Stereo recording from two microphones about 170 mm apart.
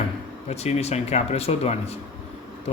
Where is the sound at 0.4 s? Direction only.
40° left (ahead or behind).